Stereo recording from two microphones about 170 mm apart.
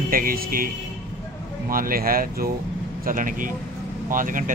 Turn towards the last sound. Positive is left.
turn(degrees=-50)  # may be behind; listen again after turning